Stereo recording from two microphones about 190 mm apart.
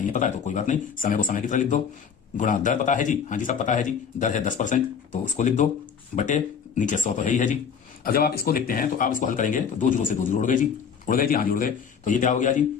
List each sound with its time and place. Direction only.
0.0 s a man's voice: 40° left (ahead or behind)